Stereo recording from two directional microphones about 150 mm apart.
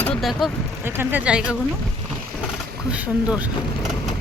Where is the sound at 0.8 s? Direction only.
15° right (ahead or behind).